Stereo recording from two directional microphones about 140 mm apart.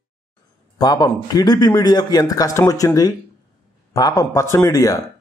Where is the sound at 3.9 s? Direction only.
25° left (ahead or behind).